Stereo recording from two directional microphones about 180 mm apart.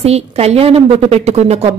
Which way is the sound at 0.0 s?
35° right (ahead or behind).